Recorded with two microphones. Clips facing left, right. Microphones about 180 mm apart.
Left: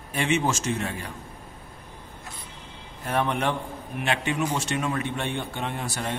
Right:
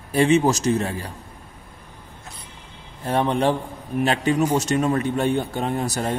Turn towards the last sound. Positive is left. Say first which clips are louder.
# right 7 dB
turn(degrees=-40)  # may be behind; listen again after turning